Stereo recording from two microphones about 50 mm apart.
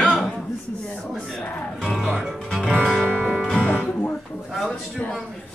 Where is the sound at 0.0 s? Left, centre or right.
Centre.